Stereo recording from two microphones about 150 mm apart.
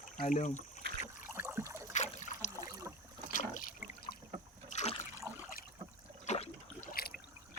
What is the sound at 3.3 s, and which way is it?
Water, 60° left (ahead or behind).